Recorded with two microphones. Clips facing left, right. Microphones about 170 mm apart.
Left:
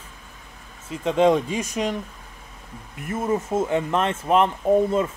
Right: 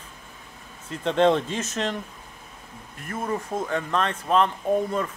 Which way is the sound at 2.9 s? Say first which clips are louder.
Left 5 dB; 20° left (ahead or behind).